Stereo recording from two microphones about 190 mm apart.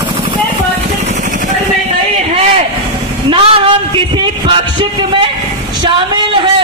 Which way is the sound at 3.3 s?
30° right (ahead or behind).